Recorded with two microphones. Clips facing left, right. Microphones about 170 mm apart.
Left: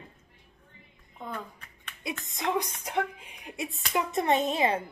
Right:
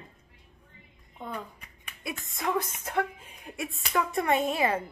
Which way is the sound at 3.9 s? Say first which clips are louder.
Even; 20° left (ahead or behind).